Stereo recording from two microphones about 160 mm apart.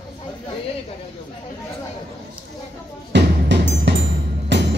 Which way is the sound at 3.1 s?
90° right.